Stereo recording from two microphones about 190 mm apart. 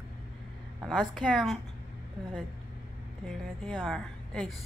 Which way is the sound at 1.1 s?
5° left (ahead or behind).